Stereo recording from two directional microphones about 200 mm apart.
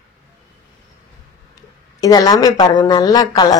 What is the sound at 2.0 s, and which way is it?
A woman's voice, 20° left (ahead or behind).